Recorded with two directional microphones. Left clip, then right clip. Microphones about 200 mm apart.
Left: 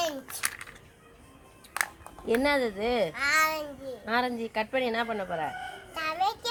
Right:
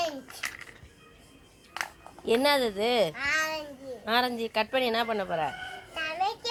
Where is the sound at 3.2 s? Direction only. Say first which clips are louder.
Left 3 dB; 10° right (ahead or behind).